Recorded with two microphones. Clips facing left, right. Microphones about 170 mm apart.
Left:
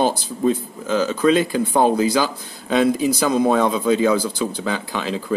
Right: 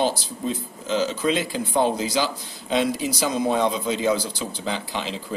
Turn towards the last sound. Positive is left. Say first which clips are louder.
# left 5 dB
turn(degrees=50)  # may be behind; listen again after turning